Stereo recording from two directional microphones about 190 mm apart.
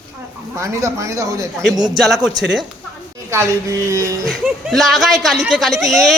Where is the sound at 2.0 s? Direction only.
Centre (ahead or behind).